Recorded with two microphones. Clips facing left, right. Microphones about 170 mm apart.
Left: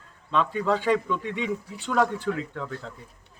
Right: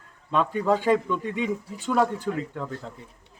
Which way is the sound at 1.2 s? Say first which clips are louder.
Right 2 dB; 45° right (ahead or behind).